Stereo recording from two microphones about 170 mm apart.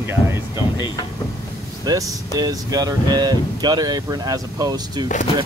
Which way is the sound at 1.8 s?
20° right (ahead or behind).